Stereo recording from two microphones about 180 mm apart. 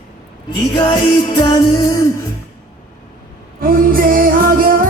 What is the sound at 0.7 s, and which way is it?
Music, 25° left (ahead or behind).